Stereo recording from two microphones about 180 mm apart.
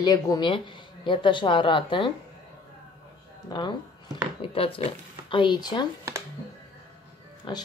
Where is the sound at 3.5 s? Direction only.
25° left (ahead or behind).